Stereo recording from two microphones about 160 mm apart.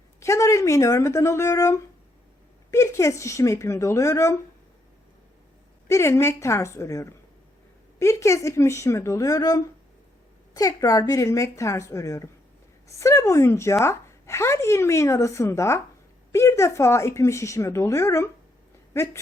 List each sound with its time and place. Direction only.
0.2 s speech: 20° left (ahead or behind)
5.9 s speech: 15° left (ahead or behind)